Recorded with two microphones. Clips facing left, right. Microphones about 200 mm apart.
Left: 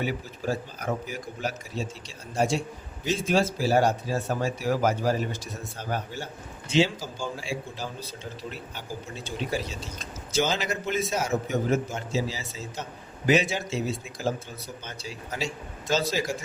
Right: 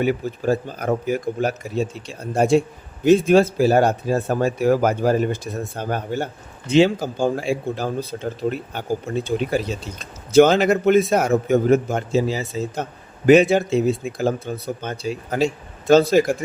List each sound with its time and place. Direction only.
0.0 s speech: 55° right (ahead or behind)